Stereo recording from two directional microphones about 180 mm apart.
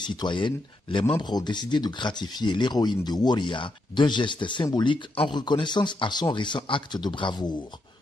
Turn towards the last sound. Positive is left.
turn(degrees=25)  # may be behind; listen again after turning